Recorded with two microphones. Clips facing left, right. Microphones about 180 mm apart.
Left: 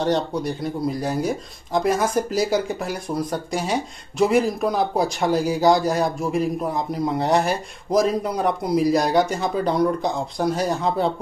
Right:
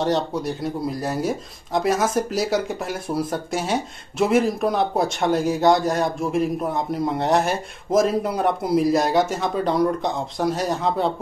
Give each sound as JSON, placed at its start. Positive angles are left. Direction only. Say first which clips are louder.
{"t": 0.0, "sound": "speech", "louder": "even", "side_deg": 0}